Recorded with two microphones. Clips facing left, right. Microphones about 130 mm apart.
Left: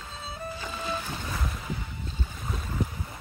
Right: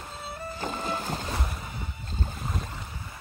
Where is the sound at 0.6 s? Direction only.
45° right (ahead or behind).